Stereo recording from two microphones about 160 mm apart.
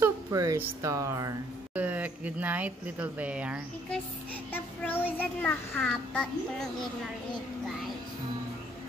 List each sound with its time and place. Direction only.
0.0 s speech: 20° right (ahead or behind)
4.5 s a child's voice: 10° left (ahead or behind)